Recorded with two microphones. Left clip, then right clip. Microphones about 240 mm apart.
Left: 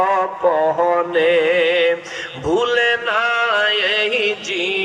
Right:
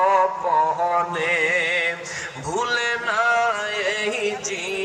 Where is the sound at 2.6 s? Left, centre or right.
Left.